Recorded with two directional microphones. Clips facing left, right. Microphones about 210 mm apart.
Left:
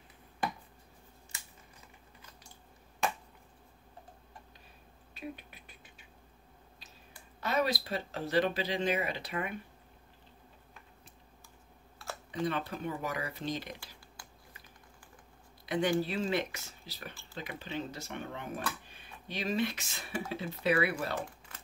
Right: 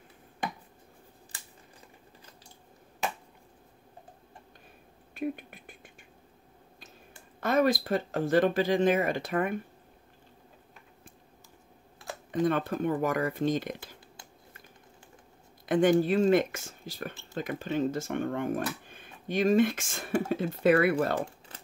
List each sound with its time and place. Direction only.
5.1 s a sound: 50° right (ahead or behind)
7.3 s speech: 50° right (ahead or behind)
12.3 s speech: 50° right (ahead or behind)
15.6 s speech: 50° right (ahead or behind)